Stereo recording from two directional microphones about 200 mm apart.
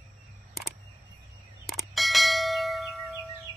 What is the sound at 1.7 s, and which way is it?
Bell, centre (ahead or behind).